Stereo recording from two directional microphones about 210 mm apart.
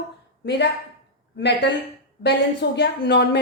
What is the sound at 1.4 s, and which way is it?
A woman's voice, 55° left (ahead or behind).